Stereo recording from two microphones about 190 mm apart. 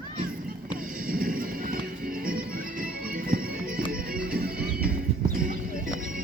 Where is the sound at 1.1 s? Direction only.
50° right (ahead or behind).